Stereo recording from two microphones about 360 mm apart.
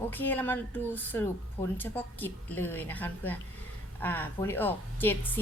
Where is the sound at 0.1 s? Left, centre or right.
Centre.